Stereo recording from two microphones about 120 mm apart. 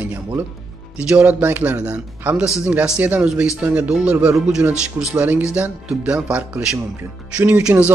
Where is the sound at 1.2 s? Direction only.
15° right (ahead or behind).